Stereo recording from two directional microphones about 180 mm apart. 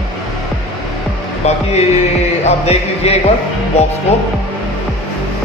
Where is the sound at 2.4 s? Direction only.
35° left (ahead or behind).